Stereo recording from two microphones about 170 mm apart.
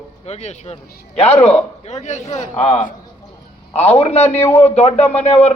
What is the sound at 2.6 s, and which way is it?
A man's voice, 30° left (ahead or behind).